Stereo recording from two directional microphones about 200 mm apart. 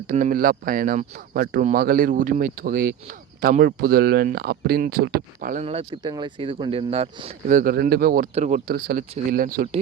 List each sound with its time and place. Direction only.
0.1 s speech: 40° right (ahead or behind)
5.6 s speech: 25° right (ahead or behind); by 9.6 s 45° right (ahead or behind)